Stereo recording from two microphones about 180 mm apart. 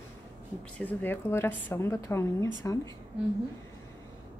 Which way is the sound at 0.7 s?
10° left (ahead or behind).